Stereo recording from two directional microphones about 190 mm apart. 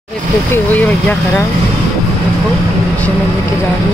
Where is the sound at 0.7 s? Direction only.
10° left (ahead or behind).